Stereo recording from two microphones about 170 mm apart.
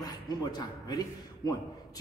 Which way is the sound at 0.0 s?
25° left (ahead or behind).